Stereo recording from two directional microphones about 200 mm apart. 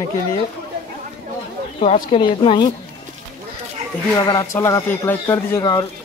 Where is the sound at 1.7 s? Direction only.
35° left (ahead or behind).